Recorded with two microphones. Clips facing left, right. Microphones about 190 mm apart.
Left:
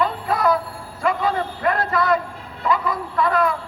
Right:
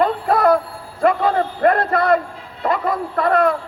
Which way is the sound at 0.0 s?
55° right (ahead or behind).